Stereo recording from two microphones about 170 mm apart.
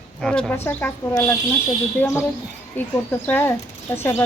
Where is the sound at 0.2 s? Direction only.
5° left (ahead or behind).